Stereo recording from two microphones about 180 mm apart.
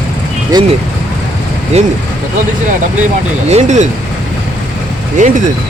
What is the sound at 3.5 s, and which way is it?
Speech, 40° right (ahead or behind).